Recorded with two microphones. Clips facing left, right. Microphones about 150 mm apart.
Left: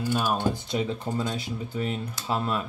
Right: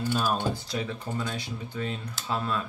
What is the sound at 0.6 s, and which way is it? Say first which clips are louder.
Speech: left 4 dB; 20° left (ahead or behind).